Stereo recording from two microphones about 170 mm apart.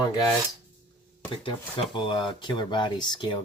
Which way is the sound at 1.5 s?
30° left (ahead or behind).